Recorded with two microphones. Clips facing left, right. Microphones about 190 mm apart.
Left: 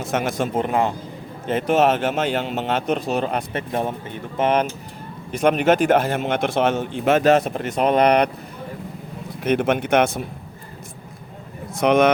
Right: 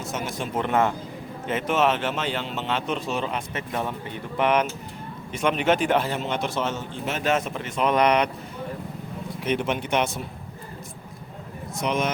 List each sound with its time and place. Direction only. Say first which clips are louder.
0.1 s speech: left 9 dB; 65° left (ahead or behind)
0.6 s a man's voice: right 1 dB; 15° left (ahead or behind)
1.5 s speech: left 5 dB; 35° left (ahead or behind)
3.7 s speech: left 4 dB; 30° left (ahead or behind)
4.4 s a man's voice: left 3 dB; 40° left (ahead or behind); by 7.2 s 60° left (ahead or behind)
7.2 s speech: left 5 dB; 40° left (ahead or behind)
9.4 s speech: left 6 dB; 50° left (ahead or behind)
11.7 s a man's voice: left 10 dB; 65° left (ahead or behind)